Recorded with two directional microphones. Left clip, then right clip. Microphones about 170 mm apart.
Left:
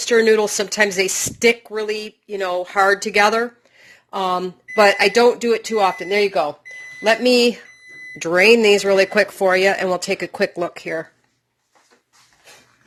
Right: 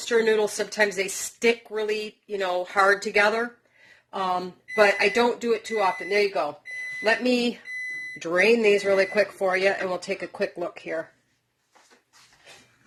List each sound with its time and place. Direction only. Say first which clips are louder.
0.1 s speech: left 7 dB; 50° left (ahead or behind)
8.2 s speech: left 7 dB; 35° left (ahead or behind)